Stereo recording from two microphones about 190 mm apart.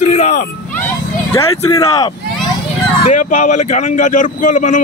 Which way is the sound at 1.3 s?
20° left (ahead or behind).